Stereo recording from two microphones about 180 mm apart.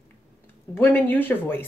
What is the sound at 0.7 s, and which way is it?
Speech, 10° left (ahead or behind).